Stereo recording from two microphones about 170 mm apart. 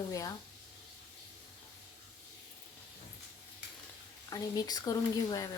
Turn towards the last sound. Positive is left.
turn(degrees=20)  # may be behind; listen again after turning